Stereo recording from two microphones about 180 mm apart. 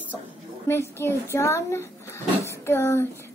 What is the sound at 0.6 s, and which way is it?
Speech, 15° left (ahead or behind).